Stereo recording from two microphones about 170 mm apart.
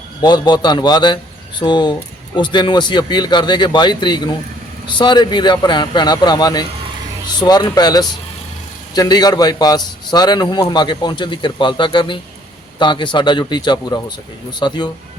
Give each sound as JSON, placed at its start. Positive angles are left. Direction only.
{"t": 0.2, "sound": "a man's voice", "side_deg": 25}